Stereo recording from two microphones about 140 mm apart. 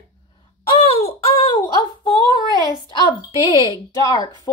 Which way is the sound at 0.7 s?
40° left (ahead or behind).